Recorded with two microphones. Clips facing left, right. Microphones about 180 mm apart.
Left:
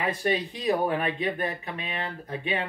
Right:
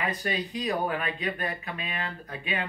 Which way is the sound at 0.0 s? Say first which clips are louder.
Left 4 dB; 30° left (ahead or behind).